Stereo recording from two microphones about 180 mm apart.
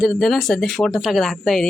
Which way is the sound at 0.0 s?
Centre (ahead or behind).